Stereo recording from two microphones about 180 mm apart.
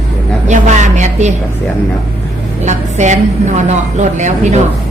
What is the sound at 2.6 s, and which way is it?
A woman's voice, 40° right (ahead or behind).